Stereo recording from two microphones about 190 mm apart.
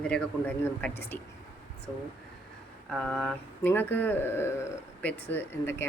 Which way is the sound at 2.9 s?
5° left (ahead or behind).